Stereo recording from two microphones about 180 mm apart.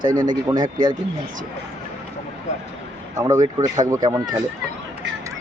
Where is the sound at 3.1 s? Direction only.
20° right (ahead or behind).